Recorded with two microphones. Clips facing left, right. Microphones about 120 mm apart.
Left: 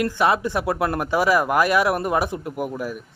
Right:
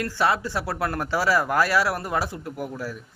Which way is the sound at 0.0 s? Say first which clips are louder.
Left 4 dB; 20° left (ahead or behind).